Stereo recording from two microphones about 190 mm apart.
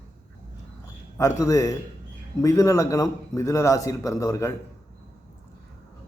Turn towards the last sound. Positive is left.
turn(degrees=15)  # may be behind; listen again after turning